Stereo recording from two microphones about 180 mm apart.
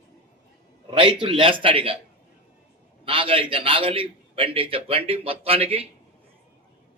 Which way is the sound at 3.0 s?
30° right (ahead or behind).